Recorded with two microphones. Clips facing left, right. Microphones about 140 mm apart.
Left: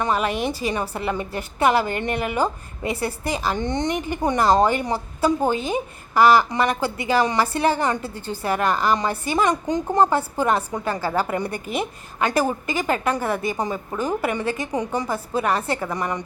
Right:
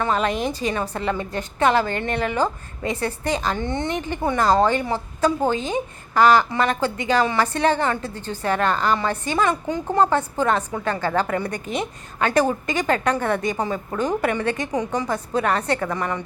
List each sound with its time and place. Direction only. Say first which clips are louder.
0.0 s a woman's voice: even; 10° left (ahead or behind)